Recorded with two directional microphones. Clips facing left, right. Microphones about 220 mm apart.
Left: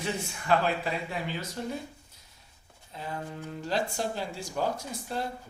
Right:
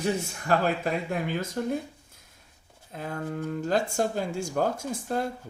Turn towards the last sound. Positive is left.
turn(degrees=-50)  # may be behind; listen again after turning